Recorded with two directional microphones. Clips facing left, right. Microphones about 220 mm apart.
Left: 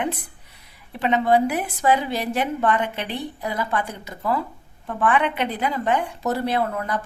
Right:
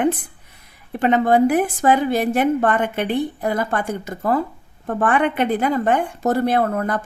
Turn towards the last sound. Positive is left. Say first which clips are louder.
# right 4 dB
turn(degrees=-50)  # may be behind; listen again after turning